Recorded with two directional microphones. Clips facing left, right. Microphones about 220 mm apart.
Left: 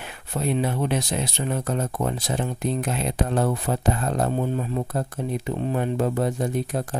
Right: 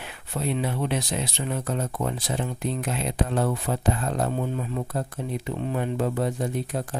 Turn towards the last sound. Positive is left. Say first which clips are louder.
# left 3 dB
turn(degrees=45)  # may be behind; listen again after turning